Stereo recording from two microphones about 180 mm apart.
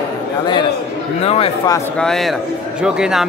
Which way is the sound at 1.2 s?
35° left (ahead or behind).